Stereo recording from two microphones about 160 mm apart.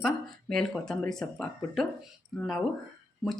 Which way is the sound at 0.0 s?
Centre (ahead or behind).